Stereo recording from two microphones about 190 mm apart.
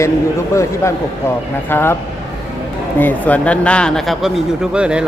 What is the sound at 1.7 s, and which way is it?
Speech, 10° left (ahead or behind).